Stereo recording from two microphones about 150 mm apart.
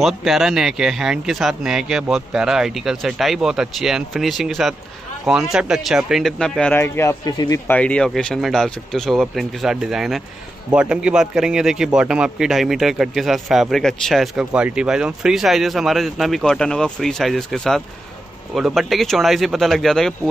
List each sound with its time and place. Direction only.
0.0 s a man's voice: centre (ahead or behind)
6.8 s speech: 20° left (ahead or behind)
7.7 s a man's voice: 10° left (ahead or behind)